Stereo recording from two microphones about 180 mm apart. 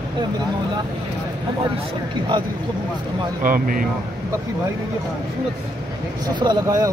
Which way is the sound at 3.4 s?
50° right (ahead or behind).